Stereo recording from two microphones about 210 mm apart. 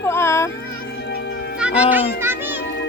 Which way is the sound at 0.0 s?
10° left (ahead or behind).